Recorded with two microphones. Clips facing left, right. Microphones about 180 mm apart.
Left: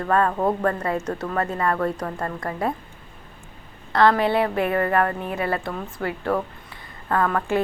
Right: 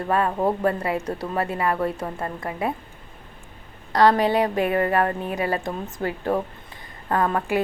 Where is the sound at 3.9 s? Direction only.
15° right (ahead or behind).